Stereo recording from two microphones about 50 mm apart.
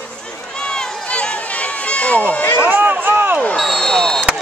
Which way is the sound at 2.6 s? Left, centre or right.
Right.